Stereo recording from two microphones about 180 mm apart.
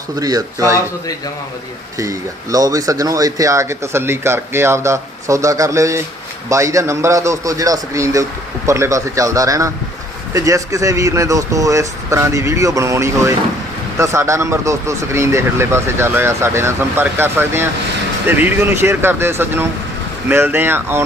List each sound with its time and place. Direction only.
0.2 s speech: 20° right (ahead or behind)
2.0 s speech: 20° right (ahead or behind)